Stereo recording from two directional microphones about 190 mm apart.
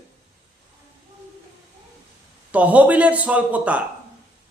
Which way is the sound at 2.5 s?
5° right (ahead or behind).